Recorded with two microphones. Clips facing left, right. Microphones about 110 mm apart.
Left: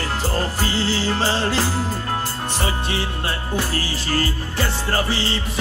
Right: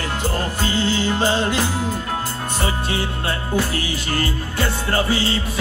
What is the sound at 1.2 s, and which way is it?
Music, 35° left (ahead or behind).